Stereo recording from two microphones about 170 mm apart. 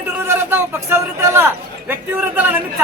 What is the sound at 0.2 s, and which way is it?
A man's voice, 15° right (ahead or behind).